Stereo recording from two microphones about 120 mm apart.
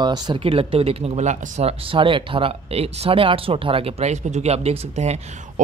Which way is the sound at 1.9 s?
45° right (ahead or behind).